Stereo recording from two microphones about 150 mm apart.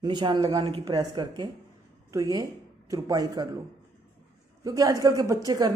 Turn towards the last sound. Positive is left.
turn(degrees=-25)  # may be behind; listen again after turning